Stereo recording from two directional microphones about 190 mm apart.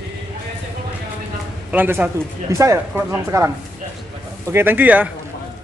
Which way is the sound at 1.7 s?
10° right (ahead or behind).